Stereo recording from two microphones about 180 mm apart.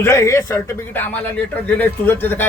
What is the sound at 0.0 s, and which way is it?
A man's voice, 15° left (ahead or behind).